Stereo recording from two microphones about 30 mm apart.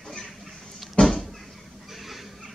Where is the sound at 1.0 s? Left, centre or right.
Left.